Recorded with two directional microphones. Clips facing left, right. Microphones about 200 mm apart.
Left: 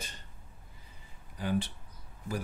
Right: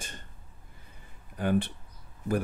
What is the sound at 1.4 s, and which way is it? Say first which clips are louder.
Speech: right 5 dB; 55° right (ahead or behind).